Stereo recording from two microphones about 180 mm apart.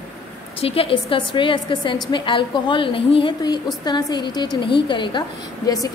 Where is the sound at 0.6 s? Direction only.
30° left (ahead or behind).